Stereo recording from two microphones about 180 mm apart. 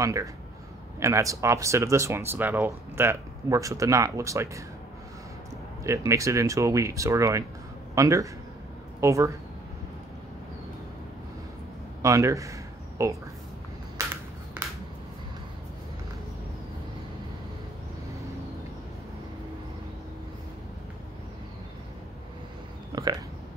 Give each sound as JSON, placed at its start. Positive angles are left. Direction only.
{"t": 0.0, "sound": "speech", "side_deg": -20}
{"t": 5.9, "sound": "speech", "side_deg": -15}
{"t": 12.0, "sound": "a man's voice", "side_deg": -15}
{"t": 22.9, "sound": "a sound", "side_deg": -25}